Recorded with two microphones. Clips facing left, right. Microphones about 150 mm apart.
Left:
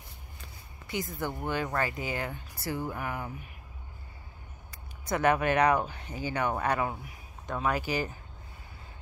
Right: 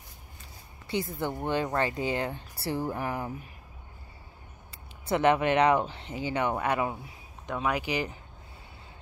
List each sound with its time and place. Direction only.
0.8 s speech: 30° right (ahead or behind)
5.0 s speech: 25° right (ahead or behind)